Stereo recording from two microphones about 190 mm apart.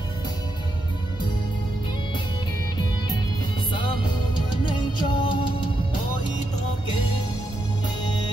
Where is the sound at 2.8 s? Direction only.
25° left (ahead or behind).